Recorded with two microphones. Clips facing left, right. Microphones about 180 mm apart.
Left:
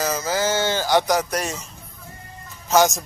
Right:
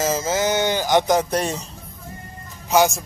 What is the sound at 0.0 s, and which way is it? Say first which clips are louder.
Speech: right 2 dB; 25° right (ahead or behind).